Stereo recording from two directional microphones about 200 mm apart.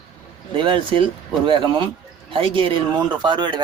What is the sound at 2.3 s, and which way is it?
Speech, 25° right (ahead or behind).